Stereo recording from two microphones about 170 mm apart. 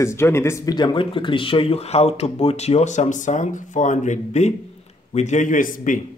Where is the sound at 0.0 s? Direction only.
15° left (ahead or behind).